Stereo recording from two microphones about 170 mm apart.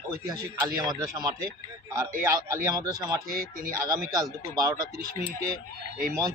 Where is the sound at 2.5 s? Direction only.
20° right (ahead or behind).